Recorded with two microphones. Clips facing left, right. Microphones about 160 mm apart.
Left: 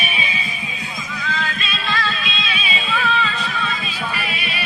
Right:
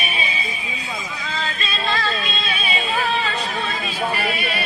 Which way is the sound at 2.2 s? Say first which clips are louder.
Right 1 dB; 40° right (ahead or behind).